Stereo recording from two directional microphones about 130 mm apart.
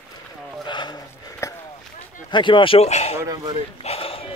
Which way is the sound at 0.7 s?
35° left (ahead or behind).